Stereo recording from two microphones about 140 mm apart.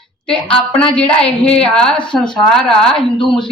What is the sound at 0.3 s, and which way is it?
A woman's voice, 5° left (ahead or behind).